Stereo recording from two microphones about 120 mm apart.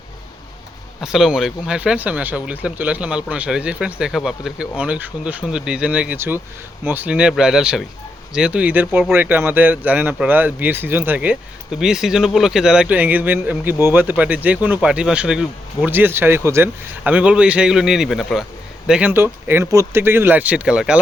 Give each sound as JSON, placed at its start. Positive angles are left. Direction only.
{"t": 1.0, "sound": "a man's voice", "side_deg": -5}
{"t": 18.9, "sound": "speech", "side_deg": -10}